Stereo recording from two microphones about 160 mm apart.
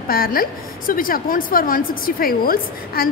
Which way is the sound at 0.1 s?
65° left (ahead or behind).